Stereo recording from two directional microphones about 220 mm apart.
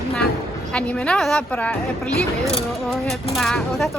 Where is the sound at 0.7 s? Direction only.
5° left (ahead or behind).